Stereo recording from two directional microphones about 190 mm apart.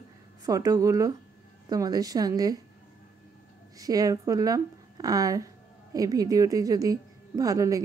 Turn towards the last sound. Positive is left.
turn(degrees=-15)  # may be behind; listen again after turning